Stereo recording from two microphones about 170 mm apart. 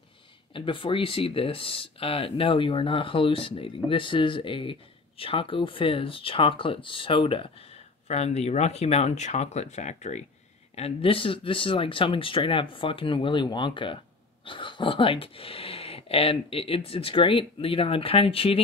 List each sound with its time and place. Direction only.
0.5 s speech: 30° left (ahead or behind)